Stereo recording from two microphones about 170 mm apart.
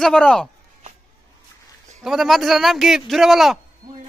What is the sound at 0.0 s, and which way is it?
Speech, 5° left (ahead or behind).